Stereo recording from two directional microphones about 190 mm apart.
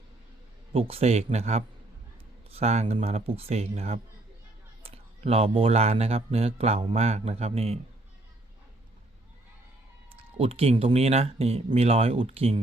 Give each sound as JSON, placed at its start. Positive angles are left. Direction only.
{"t": 0.7, "sound": "speech", "side_deg": -30}
{"t": 10.2, "sound": "speech", "side_deg": -30}